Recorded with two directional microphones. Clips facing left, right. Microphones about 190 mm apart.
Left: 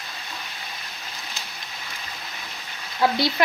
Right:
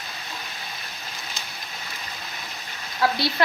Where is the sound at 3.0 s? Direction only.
20° left (ahead or behind).